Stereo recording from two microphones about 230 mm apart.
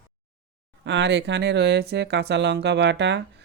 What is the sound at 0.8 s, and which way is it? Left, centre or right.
Speech, right.